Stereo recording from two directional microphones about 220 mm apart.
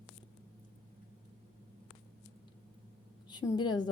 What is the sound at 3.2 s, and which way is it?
Speech, 20° left (ahead or behind).